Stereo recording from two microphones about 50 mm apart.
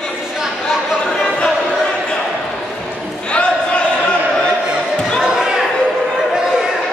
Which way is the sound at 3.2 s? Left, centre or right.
Left.